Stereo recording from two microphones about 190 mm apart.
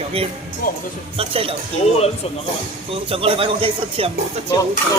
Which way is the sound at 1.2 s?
30° right (ahead or behind).